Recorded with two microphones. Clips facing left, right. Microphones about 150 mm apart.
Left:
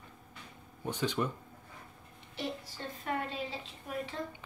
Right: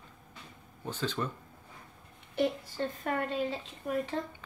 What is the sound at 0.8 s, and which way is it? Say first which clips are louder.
Speech: left 1 dB; 15° left (ahead or behind).